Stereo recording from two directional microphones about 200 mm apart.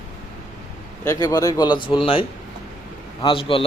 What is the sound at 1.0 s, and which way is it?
A man's voice, 15° left (ahead or behind).